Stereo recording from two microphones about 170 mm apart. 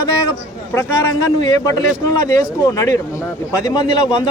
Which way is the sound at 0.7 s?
20° left (ahead or behind).